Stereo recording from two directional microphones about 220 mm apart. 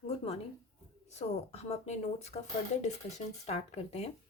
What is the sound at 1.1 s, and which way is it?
Speech, 30° left (ahead or behind).